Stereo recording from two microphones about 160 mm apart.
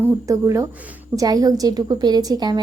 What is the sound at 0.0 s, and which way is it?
A woman's voice, 20° right (ahead or behind).